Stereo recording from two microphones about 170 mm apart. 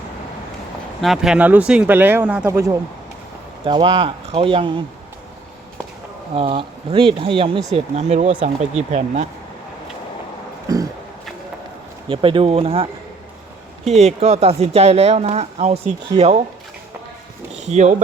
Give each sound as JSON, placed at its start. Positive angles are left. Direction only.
{"t": 1.0, "sound": "speech", "side_deg": 0}
{"t": 3.6, "sound": "speech", "side_deg": -30}
{"t": 6.3, "sound": "speech", "side_deg": -35}
{"t": 10.7, "sound": "a sound", "side_deg": -20}
{"t": 12.0, "sound": "speech", "side_deg": -30}
{"t": 17.6, "sound": "speech", "side_deg": -40}